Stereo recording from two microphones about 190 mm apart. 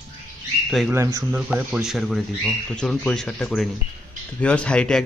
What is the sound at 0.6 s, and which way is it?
Speech, centre (ahead or behind).